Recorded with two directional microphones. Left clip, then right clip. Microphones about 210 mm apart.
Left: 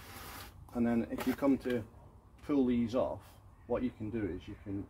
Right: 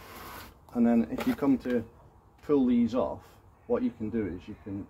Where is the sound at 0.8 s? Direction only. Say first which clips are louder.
Right 7 dB; 30° right (ahead or behind).